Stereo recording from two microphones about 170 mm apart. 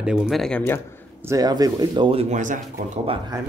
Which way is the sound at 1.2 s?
20° right (ahead or behind).